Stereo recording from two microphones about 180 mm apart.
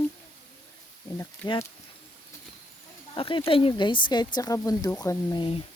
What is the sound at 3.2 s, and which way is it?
Speech, 30° left (ahead or behind).